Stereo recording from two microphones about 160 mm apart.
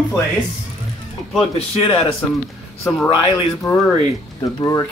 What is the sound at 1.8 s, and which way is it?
Speech, 35° left (ahead or behind).